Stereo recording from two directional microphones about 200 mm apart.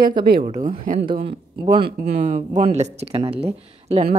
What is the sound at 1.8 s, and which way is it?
Speech, 55° right (ahead or behind).